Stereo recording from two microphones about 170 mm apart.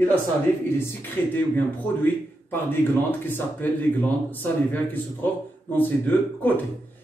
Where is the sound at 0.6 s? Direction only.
15° left (ahead or behind).